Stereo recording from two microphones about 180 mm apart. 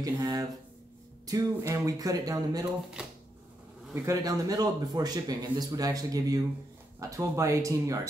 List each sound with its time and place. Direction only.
0.0 s speech: 20° right (ahead or behind)
3.0 s shuffling cards: 5° right (ahead or behind)
3.9 s speech: 15° right (ahead or behind)